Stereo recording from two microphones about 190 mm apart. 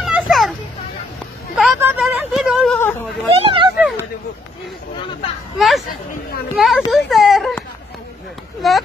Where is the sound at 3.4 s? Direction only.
25° right (ahead or behind).